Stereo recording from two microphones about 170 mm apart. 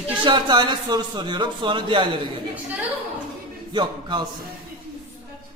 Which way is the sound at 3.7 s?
25° right (ahead or behind).